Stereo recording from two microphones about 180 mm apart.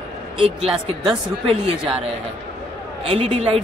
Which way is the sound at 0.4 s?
35° right (ahead or behind).